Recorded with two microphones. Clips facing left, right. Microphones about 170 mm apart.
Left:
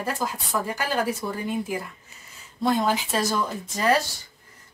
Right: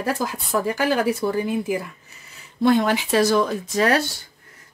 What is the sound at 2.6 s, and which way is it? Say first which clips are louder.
Speech: right 5 dB; 70° right (ahead or behind).